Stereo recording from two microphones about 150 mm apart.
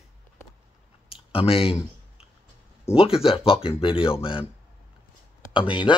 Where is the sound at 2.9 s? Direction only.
40° left (ahead or behind).